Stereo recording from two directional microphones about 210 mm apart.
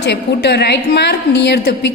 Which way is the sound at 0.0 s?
50° left (ahead or behind).